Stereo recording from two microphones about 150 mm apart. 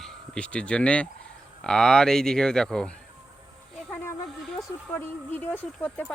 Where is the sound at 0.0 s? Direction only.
5° left (ahead or behind).